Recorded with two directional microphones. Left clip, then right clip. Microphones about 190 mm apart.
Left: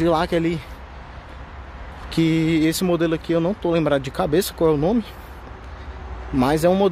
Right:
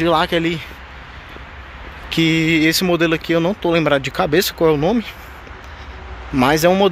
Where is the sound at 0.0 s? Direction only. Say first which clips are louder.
Right 3 dB; 5° left (ahead or behind).